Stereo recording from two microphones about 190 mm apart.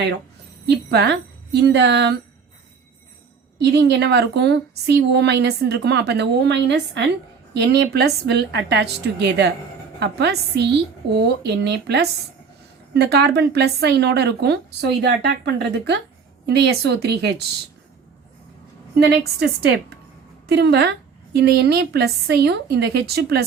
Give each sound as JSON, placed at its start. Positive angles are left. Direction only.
{"t": 0.9, "sound": "a woman's voice", "side_deg": -60}
{"t": 3.6, "sound": "a woman's voice", "side_deg": -60}
{"t": 18.9, "sound": "a woman's voice", "side_deg": -60}